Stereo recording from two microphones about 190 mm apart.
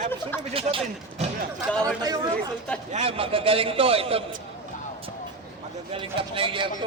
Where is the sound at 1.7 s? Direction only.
5° left (ahead or behind).